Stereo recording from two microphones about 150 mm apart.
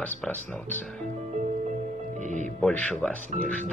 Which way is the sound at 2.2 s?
55° right (ahead or behind).